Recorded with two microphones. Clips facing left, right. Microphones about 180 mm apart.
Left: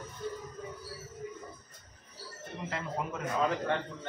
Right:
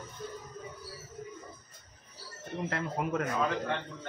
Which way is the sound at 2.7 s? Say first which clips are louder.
Right 3 dB; 60° right (ahead or behind).